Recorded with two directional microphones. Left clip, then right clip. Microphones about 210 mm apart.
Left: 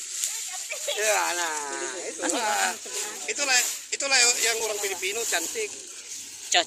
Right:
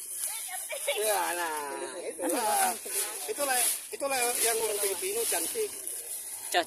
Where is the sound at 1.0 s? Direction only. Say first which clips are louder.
Left 6 dB; 15° right (ahead or behind).